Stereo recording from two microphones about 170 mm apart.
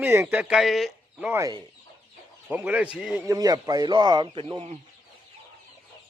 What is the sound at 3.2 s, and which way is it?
Speech, 20° right (ahead or behind).